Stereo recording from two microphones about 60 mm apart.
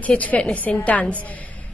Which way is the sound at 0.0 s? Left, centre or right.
Left.